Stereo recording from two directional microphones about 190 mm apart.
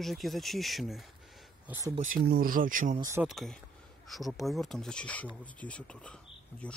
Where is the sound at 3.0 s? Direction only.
15° right (ahead or behind).